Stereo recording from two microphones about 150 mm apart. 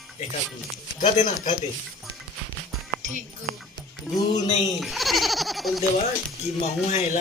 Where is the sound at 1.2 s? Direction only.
55° left (ahead or behind).